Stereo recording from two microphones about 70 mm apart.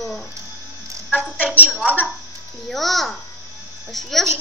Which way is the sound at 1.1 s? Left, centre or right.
Centre.